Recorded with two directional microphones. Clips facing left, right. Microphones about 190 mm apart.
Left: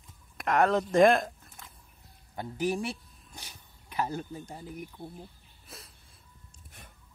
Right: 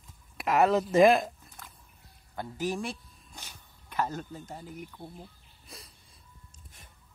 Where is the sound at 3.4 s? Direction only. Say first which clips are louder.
Even; 10° left (ahead or behind).